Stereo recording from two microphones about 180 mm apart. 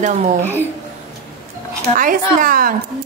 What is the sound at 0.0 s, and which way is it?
Speech, 40° right (ahead or behind).